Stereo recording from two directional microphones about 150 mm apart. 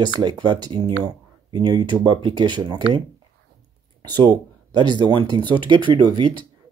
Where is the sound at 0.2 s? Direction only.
30° right (ahead or behind).